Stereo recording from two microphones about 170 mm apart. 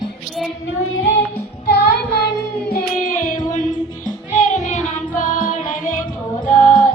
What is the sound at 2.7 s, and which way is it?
Music, 50° left (ahead or behind).